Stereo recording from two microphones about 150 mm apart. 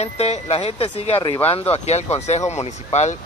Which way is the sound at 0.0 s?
45° left (ahead or behind).